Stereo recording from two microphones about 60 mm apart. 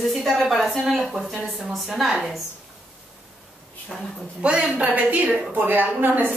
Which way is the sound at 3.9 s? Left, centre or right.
Centre.